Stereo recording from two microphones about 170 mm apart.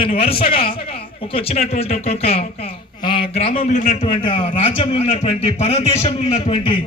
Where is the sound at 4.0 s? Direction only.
30° left (ahead or behind).